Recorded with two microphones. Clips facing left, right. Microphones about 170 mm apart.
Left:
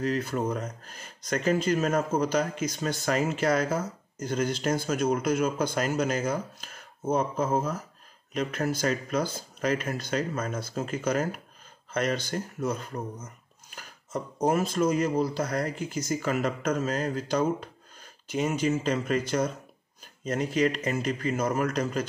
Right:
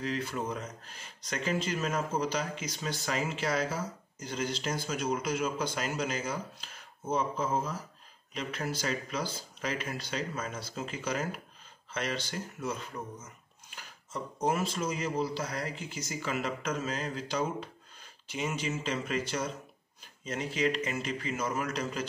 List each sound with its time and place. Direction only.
0.0 s speech: 45° left (ahead or behind)